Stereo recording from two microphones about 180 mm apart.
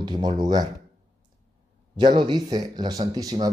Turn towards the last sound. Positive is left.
turn(degrees=-20)  # may be behind; listen again after turning